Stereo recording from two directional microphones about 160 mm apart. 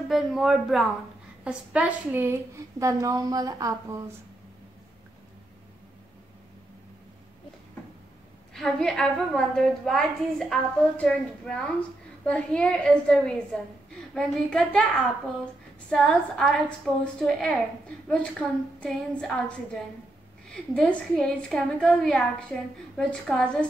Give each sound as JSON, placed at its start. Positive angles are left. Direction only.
{"t": 0.1, "sound": "a woman's voice", "side_deg": 0}
{"t": 8.5, "sound": "a woman's voice", "side_deg": 5}
{"t": 15.9, "sound": "a woman's voice", "side_deg": 5}